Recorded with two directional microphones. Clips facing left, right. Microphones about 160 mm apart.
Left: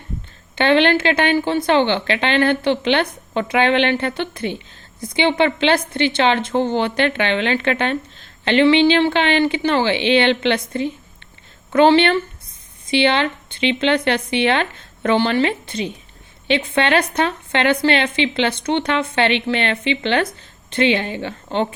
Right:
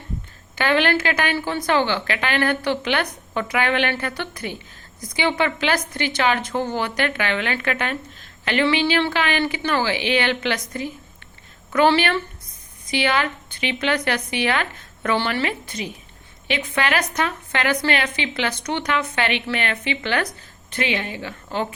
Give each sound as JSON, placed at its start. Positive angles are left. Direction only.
{"t": 0.5, "sound": "a woman's voice", "side_deg": 25}